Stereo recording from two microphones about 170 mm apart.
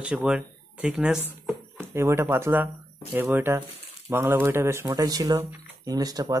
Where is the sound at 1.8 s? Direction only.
15° right (ahead or behind).